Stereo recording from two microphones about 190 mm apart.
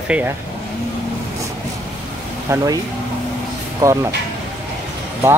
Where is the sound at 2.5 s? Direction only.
15° right (ahead or behind).